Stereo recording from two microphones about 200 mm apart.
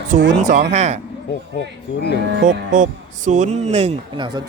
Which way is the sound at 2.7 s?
40° right (ahead or behind).